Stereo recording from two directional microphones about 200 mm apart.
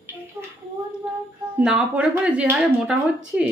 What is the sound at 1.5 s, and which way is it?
Speech, 5° right (ahead or behind).